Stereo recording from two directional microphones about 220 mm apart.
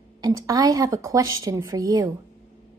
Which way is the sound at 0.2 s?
15° right (ahead or behind).